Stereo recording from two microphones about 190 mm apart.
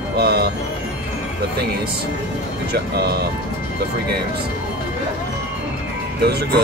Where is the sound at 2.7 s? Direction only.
60° right (ahead or behind).